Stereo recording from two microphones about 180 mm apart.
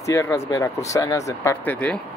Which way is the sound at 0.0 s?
15° left (ahead or behind).